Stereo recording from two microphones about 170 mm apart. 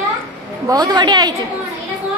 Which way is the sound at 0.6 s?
20° right (ahead or behind).